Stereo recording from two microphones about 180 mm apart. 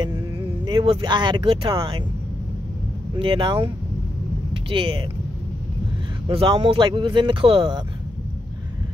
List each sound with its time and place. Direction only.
0.7 s speech: 25° right (ahead or behind)
3.2 s speech: 30° right (ahead or behind)
6.2 s speech: 25° right (ahead or behind)